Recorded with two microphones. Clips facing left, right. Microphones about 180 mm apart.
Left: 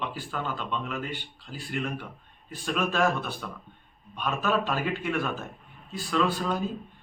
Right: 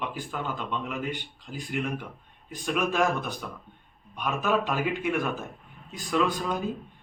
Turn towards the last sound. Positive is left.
turn(degrees=-15)  # may be behind; listen again after turning